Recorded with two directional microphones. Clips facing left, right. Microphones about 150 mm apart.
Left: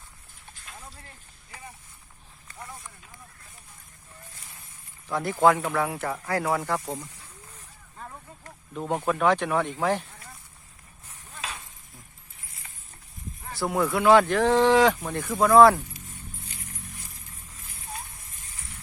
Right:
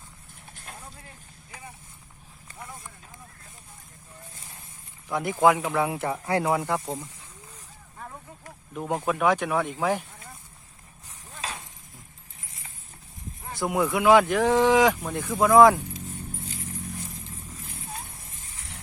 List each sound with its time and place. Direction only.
0.5 s vehicle: 55° right (ahead or behind)
1.0 s speech: 15° right (ahead or behind)
5.0 s speech: 15° right (ahead or behind)
7.9 s a sound: 5° right (ahead or behind)
9.0 s speech: 10° right (ahead or behind)
11.3 s a sound: 35° right (ahead or behind)
13.4 s speech: 20° right (ahead or behind)